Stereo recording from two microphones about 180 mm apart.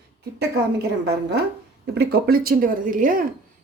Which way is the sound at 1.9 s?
60° right (ahead or behind).